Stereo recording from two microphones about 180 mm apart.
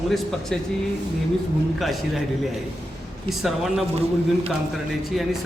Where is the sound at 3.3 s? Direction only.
Centre (ahead or behind).